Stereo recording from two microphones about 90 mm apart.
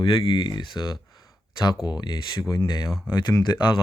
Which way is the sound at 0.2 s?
55° left (ahead or behind).